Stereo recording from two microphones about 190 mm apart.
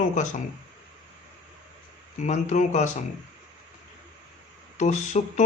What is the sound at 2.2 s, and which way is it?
Speech, 40° left (ahead or behind).